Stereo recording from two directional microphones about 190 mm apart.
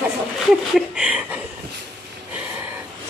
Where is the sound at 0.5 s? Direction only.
5° right (ahead or behind).